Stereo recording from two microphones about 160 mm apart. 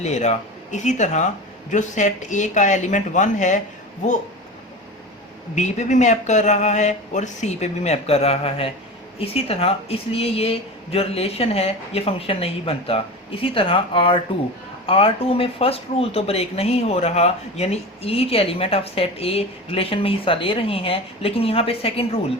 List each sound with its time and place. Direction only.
0.0 s speech: 45° left (ahead or behind)
5.5 s speech: 50° left (ahead or behind)